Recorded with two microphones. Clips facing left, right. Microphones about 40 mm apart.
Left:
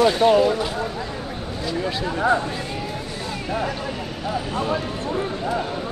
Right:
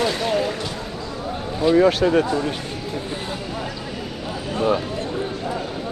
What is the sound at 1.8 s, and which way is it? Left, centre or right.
Speech, right.